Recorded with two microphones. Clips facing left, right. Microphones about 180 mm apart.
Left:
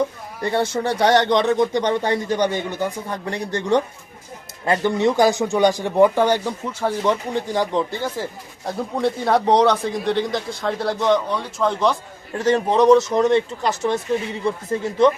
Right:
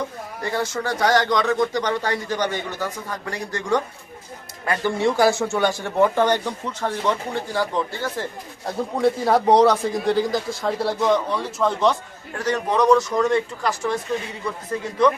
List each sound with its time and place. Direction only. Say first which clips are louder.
0.4 s a man's voice: left 4 dB; 25° left (ahead or behind)
8.6 s a man's voice: right 1 dB; centre (ahead or behind)
12.4 s a man's voice: left 4 dB; 25° left (ahead or behind)